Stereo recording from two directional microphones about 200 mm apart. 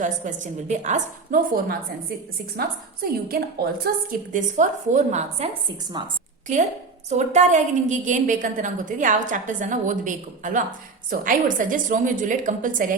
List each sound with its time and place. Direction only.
0.0 s a woman's voice: 40° right (ahead or behind)
6.0 s a woman's voice: 25° right (ahead or behind)
7.1 s a woman's voice: 35° right (ahead or behind)